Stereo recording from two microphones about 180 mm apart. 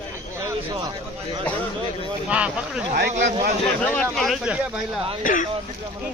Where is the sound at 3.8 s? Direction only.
5° left (ahead or behind).